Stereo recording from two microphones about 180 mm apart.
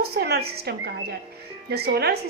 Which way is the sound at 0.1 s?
65° right (ahead or behind).